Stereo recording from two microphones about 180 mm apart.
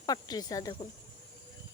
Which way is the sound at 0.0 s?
20° left (ahead or behind).